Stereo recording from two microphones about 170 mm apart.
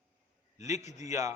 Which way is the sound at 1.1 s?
15° right (ahead or behind).